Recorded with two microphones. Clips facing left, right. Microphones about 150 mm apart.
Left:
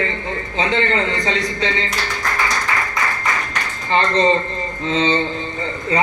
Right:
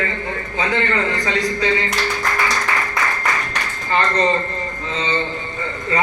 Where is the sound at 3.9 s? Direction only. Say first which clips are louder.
Left 2 dB; 25° left (ahead or behind).